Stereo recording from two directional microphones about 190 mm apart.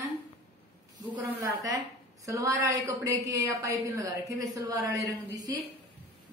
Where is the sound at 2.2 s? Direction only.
15° right (ahead or behind).